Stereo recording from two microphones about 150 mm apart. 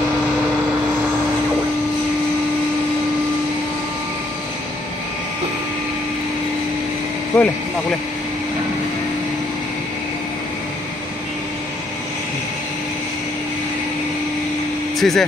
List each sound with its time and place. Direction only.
7.3 s speech: 5° left (ahead or behind)
15.0 s speech: centre (ahead or behind)